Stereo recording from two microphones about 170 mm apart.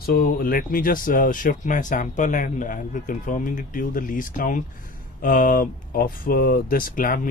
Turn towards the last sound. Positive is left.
turn(degrees=50)  # may be behind; listen again after turning